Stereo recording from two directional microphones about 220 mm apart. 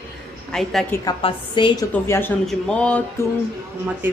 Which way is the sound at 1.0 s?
20° left (ahead or behind).